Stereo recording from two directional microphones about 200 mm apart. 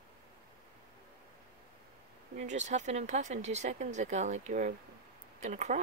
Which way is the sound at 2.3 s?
35° right (ahead or behind).